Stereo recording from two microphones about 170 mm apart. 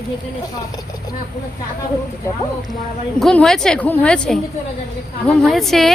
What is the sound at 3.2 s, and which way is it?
A woman's voice, 5° left (ahead or behind).